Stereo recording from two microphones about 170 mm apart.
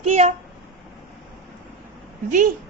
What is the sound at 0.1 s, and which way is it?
Speech, 40° right (ahead or behind).